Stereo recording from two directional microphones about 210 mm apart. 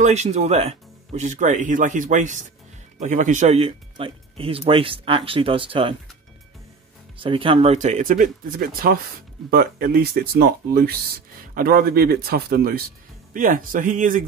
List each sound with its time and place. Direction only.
0.0 s speech: 30° right (ahead or behind)
7.2 s speech: 25° right (ahead or behind)